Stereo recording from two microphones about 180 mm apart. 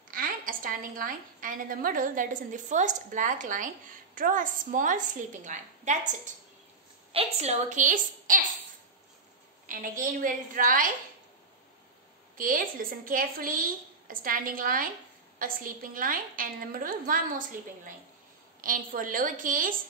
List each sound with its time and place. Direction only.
0.1 s a woman's voice: 50° right (ahead or behind)
9.7 s a woman's voice: 50° right (ahead or behind)
12.4 s a woman's voice: 50° right (ahead or behind)
18.6 s a woman's voice: 50° right (ahead or behind)